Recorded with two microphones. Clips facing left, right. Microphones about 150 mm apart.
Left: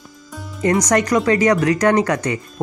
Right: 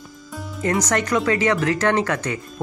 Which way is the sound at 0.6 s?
Centre (ahead or behind).